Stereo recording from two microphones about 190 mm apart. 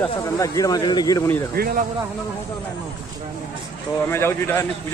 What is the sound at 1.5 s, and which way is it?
Speech, 50° right (ahead or behind).